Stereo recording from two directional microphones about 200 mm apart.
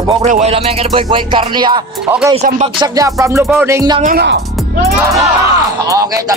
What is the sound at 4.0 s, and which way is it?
Speech, 45° right (ahead or behind).